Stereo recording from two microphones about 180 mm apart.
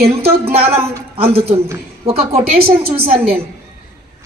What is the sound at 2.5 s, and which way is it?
Speech, 55° right (ahead or behind).